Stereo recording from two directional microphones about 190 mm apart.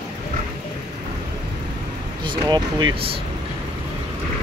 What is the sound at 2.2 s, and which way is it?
Speech, 20° right (ahead or behind).